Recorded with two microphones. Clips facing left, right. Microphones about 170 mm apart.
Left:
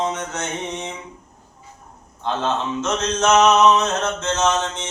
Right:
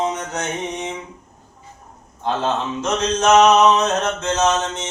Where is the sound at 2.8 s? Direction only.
15° right (ahead or behind).